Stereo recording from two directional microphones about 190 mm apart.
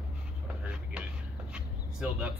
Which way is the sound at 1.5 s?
5° right (ahead or behind).